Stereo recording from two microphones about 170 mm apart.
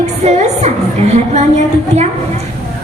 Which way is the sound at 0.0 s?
40° right (ahead or behind).